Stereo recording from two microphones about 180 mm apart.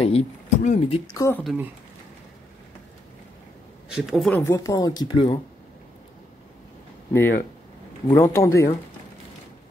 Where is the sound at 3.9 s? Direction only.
Centre (ahead or behind); by 5.3 s 25° left (ahead or behind).